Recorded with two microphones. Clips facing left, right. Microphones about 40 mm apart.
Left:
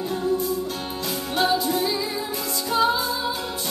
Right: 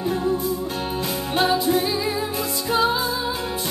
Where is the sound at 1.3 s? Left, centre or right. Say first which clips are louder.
Right 1 dB; right.